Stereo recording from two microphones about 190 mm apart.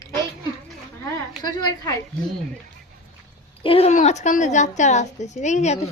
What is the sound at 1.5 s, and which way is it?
Speech, 20° left (ahead or behind).